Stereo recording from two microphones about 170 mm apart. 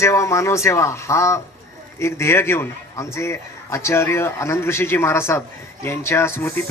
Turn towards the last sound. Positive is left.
turn(degrees=15)  # may be behind; listen again after turning